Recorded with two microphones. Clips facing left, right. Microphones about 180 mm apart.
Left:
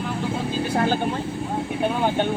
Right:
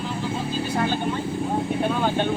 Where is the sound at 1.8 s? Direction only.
15° left (ahead or behind).